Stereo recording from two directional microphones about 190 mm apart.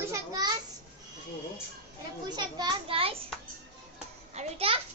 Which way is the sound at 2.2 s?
20° right (ahead or behind).